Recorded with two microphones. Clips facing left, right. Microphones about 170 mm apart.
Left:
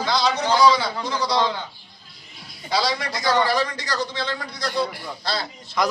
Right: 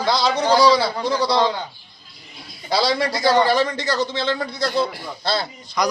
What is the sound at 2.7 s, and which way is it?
A man's voice, 35° right (ahead or behind).